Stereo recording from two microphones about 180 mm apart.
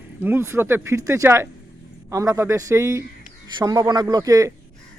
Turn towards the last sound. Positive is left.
turn(degrees=-20)  # may be behind; listen again after turning